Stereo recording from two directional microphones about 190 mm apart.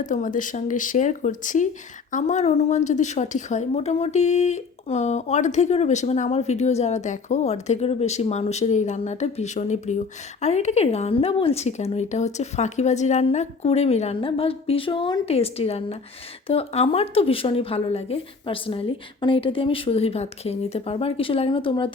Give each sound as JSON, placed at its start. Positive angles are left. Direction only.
{"t": 0.0, "sound": "a woman's voice", "side_deg": 40}